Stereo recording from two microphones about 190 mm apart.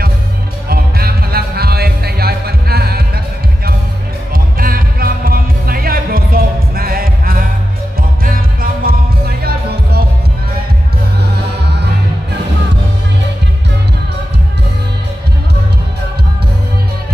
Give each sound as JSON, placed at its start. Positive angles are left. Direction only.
{"t": 0.7, "sound": "music", "side_deg": -55}
{"t": 4.3, "sound": "music", "side_deg": -50}